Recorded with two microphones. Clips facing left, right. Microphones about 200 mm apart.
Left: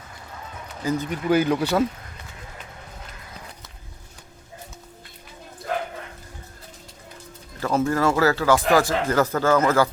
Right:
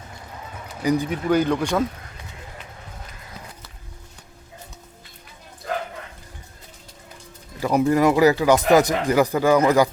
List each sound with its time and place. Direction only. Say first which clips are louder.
0.8 s speech: right 4 dB; 15° right (ahead or behind)
1.1 s speech: even; 5° left (ahead or behind)
7.6 s speech: right 3 dB; 15° right (ahead or behind)